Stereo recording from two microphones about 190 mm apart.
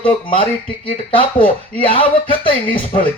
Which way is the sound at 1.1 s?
25° left (ahead or behind).